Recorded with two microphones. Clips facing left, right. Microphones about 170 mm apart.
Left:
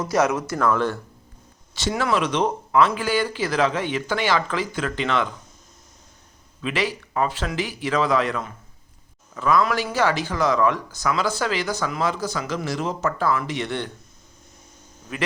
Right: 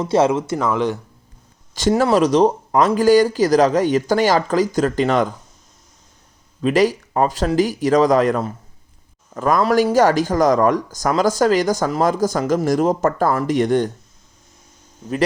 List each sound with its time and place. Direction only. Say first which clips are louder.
0.0 s speech: right 5 dB; 25° right (ahead or behind)
1.7 s speech: right 7 dB; 45° right (ahead or behind)
6.6 s speech: right 10 dB; 40° right (ahead or behind)